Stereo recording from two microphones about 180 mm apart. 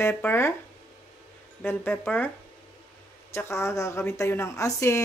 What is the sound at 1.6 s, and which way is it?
Speech, 10° left (ahead or behind).